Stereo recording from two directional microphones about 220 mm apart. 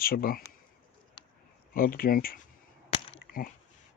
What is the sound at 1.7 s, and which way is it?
Speech, 40° left (ahead or behind).